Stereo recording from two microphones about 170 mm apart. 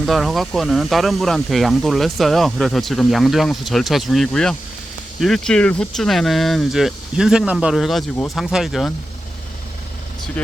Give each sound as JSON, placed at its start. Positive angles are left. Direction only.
{"t": 0.0, "sound": "speech", "side_deg": 0}
{"t": 10.4, "sound": "speech", "side_deg": 10}